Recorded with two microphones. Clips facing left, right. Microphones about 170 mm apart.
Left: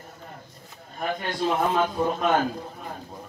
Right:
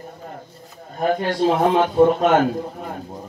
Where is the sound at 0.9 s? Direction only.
45° right (ahead or behind).